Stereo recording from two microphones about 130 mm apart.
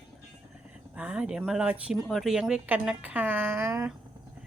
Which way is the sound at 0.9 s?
10° right (ahead or behind).